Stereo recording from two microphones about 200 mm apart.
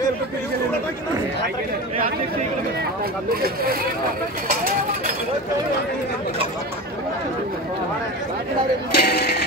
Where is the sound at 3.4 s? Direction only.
50° right (ahead or behind).